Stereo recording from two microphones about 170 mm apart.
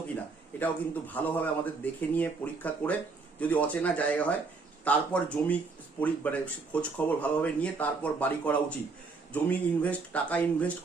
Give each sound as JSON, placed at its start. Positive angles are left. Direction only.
{"t": 0.6, "sound": "speech", "side_deg": 10}